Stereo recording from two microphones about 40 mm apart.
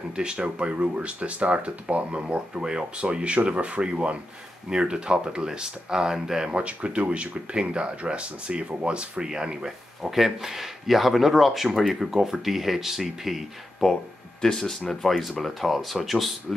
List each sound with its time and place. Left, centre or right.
0.1 s speech: right
6.5 s speech: right
10.1 s speech: centre
14.4 s speech: centre